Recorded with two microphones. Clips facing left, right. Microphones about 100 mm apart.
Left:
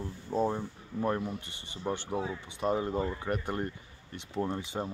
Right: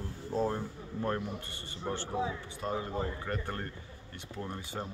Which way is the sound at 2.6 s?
20° left (ahead or behind).